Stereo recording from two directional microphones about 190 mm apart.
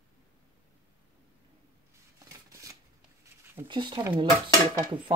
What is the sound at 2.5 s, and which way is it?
Scissors, 15° right (ahead or behind).